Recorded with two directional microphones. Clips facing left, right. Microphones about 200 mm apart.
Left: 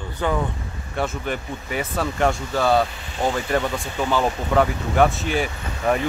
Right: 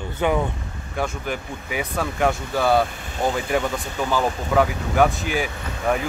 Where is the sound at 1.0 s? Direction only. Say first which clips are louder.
Left 1 dB; 5° right (ahead or behind).